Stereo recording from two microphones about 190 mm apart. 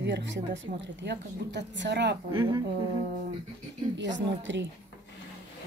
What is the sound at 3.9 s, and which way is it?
Speech, 70° right (ahead or behind).